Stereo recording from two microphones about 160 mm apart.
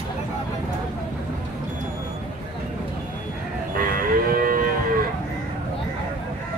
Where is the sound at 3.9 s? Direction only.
65° right (ahead or behind).